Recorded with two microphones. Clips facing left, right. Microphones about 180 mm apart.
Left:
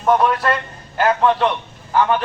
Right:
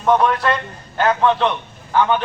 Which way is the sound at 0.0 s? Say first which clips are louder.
Even; 5° left (ahead or behind).